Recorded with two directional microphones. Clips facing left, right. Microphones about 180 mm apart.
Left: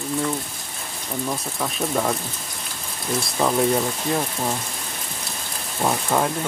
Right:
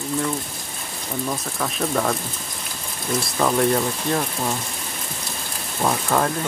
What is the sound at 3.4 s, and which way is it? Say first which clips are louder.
Speech: even; 5° left (ahead or behind).